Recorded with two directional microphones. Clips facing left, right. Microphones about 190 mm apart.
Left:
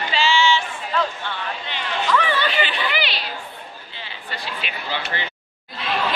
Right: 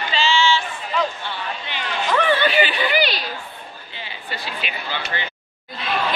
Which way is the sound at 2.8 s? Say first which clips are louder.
Right 5 dB; 45° right (ahead or behind).